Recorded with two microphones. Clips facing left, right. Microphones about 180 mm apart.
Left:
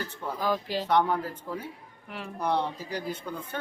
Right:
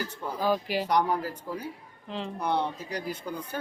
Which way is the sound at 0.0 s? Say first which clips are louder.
Right 1 dB; 15° right (ahead or behind).